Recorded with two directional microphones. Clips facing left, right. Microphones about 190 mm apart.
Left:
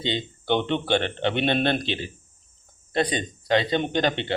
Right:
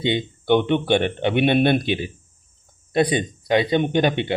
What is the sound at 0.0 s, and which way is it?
Speech, 15° right (ahead or behind).